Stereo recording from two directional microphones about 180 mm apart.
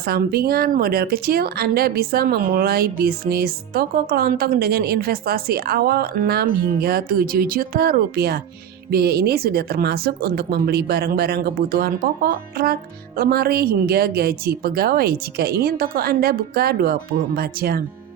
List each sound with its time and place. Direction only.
0.0 s speech: 60° right (ahead or behind)